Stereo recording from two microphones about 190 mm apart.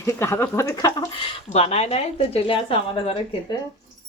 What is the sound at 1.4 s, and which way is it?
Speech, 35° left (ahead or behind).